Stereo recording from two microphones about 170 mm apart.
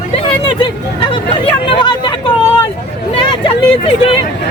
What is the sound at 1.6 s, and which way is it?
Speech, 25° left (ahead or behind).